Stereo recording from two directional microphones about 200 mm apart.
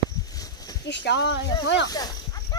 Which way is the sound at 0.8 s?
60° left (ahead or behind).